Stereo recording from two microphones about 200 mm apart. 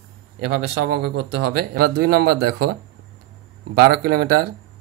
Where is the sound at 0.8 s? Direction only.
55° right (ahead or behind).